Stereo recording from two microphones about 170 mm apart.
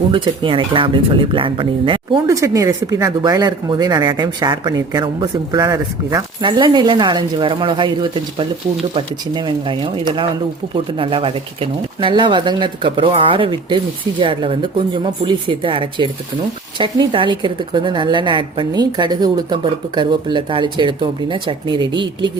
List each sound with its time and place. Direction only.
0.1 s speech: 30° right (ahead or behind)
2.2 s speech: 20° right (ahead or behind)